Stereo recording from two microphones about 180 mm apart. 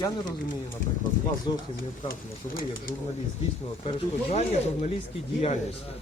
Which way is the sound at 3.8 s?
35° left (ahead or behind).